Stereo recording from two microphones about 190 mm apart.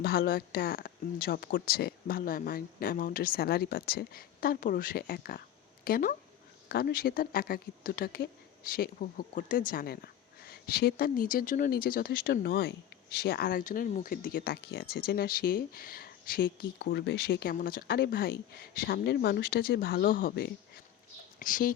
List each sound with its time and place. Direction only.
0.0 s speech: 50° left (ahead or behind)